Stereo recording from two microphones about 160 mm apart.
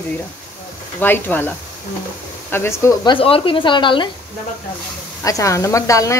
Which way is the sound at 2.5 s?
15° left (ahead or behind).